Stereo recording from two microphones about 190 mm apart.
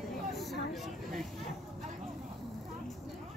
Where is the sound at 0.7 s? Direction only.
Centre (ahead or behind).